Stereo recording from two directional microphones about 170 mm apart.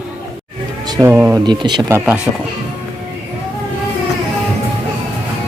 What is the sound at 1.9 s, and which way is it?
Speech, 10° right (ahead or behind).